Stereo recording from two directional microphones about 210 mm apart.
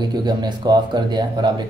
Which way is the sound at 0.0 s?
20° right (ahead or behind).